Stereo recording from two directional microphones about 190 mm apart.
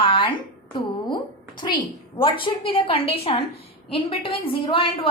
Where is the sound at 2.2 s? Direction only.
25° left (ahead or behind).